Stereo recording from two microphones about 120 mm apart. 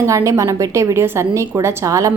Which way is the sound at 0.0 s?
25° right (ahead or behind).